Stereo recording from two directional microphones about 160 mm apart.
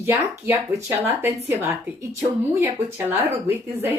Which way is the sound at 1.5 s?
15° right (ahead or behind).